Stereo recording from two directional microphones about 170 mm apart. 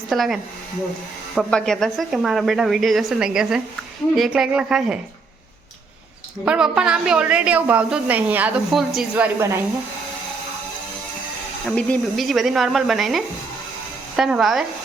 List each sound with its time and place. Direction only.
0.1 s a woman's voice: centre (ahead or behind)
1.4 s a woman's voice: 5° left (ahead or behind)
6.4 s a woman's voice: 5° right (ahead or behind)
11.7 s a woman's voice: 5° left (ahead or behind)